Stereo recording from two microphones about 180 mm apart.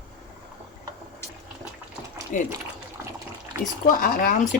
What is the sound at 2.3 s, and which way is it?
Speech, 45° left (ahead or behind).